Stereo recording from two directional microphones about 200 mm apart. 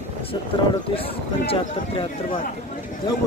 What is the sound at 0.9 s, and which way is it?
Speech, 25° left (ahead or behind).